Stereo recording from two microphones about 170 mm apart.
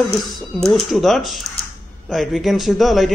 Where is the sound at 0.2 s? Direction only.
Centre (ahead or behind).